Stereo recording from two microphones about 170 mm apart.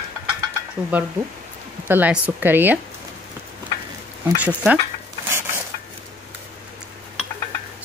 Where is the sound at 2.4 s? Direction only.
10° right (ahead or behind).